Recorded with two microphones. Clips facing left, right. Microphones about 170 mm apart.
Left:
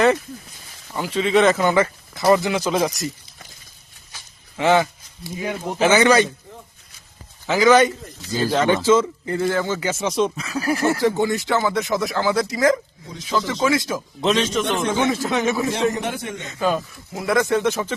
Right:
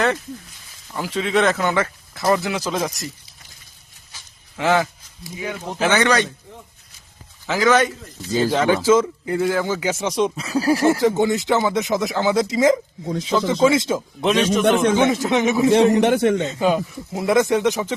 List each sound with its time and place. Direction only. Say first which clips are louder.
0.9 s speech: left 2 dB; centre (ahead or behind)
4.5 s speech: left 2 dB; centre (ahead or behind)
7.4 s speech: left 3 dB; centre (ahead or behind)
8.3 s speech: right 1 dB; 15° right (ahead or behind)
10.3 s speech: right 4 dB; 30° right (ahead or behind)
14.2 s speech: right 2 dB; 10° right (ahead or behind)
16.0 s a man's voice: right 11 dB; 75° right (ahead or behind)
16.5 s speech: right 3 dB; 15° right (ahead or behind)